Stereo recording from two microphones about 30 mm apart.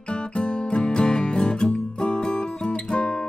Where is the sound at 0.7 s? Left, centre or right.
Left.